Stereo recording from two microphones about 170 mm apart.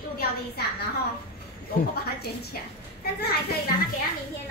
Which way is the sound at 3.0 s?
65° left (ahead or behind).